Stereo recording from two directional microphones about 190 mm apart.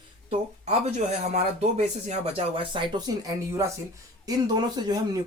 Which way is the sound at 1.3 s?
35° right (ahead or behind).